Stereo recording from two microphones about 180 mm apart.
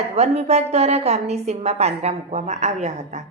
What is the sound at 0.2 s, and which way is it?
A woman's voice, 35° right (ahead or behind).